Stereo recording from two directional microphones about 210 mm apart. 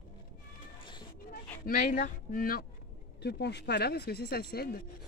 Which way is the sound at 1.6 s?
40° left (ahead or behind).